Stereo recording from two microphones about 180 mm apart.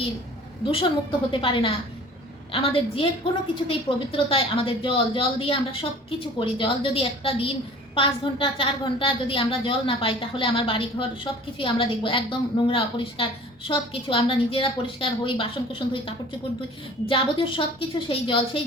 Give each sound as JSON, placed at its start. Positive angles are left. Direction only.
{"t": 0.6, "sound": "a woman's voice", "side_deg": 30}